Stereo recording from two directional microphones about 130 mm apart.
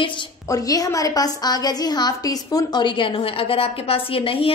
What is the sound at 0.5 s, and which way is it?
A woman's voice, 25° left (ahead or behind).